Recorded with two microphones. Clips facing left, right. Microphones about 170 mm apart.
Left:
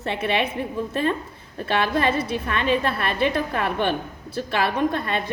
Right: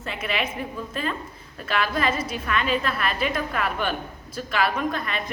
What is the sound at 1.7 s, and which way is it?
A woman's voice, 30° left (ahead or behind).